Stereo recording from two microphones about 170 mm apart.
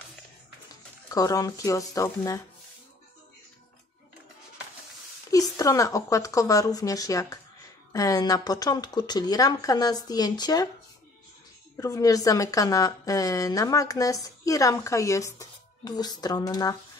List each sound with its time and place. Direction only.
1.1 s a woman's voice: 20° left (ahead or behind)
5.6 s a woman's voice: 20° left (ahead or behind)
11.7 s a woman's voice: 20° left (ahead or behind)